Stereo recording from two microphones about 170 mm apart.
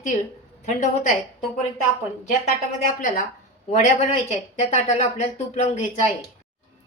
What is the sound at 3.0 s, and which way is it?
Speech, 50° left (ahead or behind).